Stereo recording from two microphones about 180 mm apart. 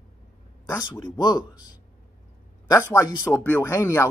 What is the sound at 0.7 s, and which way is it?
Speech, 20° left (ahead or behind).